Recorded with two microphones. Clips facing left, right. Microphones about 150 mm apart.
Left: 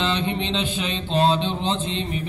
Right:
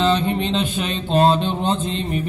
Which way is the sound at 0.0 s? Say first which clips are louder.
Right 5 dB; 45° right (ahead or behind).